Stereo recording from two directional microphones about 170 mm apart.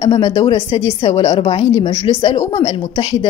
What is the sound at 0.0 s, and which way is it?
A woman's voice, 25° left (ahead or behind).